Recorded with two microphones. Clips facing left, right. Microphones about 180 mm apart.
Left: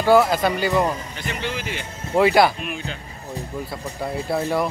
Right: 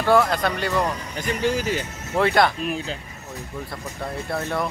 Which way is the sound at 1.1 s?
40° right (ahead or behind).